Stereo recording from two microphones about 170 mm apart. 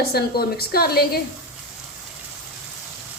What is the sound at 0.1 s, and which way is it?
Speech, 65° left (ahead or behind).